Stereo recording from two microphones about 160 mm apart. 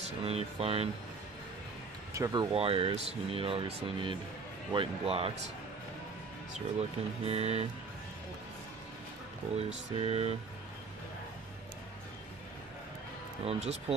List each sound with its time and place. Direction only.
0.2 s speech: 40° right (ahead or behind)
2.1 s speech: 20° right (ahead or behind)
2.5 s speech: 35° right (ahead or behind)
6.8 s speech: 40° right (ahead or behind)
9.6 s speech: 40° right (ahead or behind)
13.5 s speech: 40° right (ahead or behind)